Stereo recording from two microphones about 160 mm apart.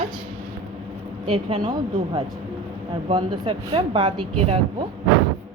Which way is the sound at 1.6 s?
25° right (ahead or behind).